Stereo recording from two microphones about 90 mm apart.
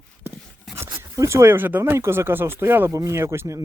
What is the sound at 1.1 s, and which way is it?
Speech, 35° right (ahead or behind).